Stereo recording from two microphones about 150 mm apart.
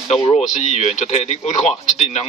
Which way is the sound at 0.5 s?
50° left (ahead or behind).